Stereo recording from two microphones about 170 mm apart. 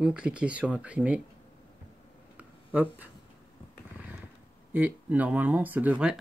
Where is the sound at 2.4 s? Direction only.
10° right (ahead or behind).